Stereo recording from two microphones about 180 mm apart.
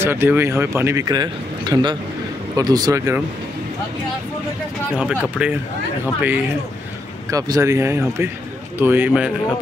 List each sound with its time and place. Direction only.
0.0 s a man's voice: 15° right (ahead or behind)
5.2 s speech: 5° right (ahead or behind)
7.2 s a man's voice: 20° right (ahead or behind)